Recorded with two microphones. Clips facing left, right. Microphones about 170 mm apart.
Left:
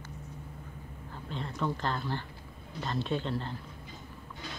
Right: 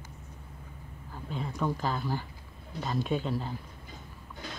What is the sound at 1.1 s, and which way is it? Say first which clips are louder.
Speech: right 2 dB; 10° right (ahead or behind).